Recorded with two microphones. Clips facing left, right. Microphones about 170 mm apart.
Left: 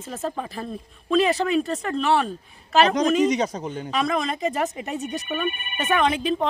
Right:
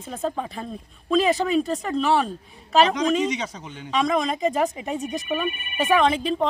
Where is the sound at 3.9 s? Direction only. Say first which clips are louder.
Right 3 dB; 5° left (ahead or behind).